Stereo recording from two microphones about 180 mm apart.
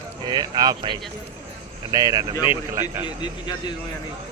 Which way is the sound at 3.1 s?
25° left (ahead or behind).